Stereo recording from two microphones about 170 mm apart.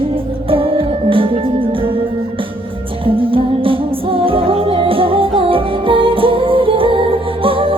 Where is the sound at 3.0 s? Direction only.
30° right (ahead or behind).